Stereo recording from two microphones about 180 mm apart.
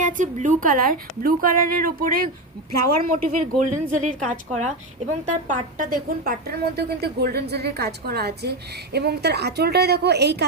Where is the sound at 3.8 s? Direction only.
45° right (ahead or behind).